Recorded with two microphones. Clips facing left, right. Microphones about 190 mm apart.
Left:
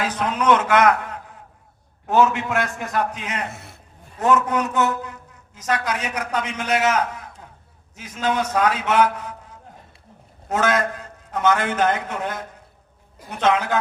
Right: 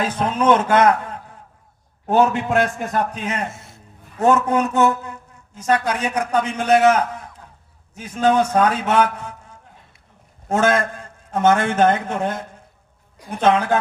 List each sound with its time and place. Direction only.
0.0 s a man's voice: 30° right (ahead or behind)
13.4 s a man's voice: 30° right (ahead or behind)